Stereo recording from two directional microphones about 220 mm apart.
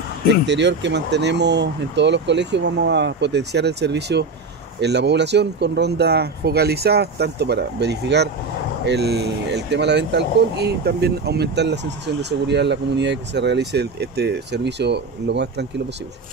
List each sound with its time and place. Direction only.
0.3 s speech: 50° right (ahead or behind)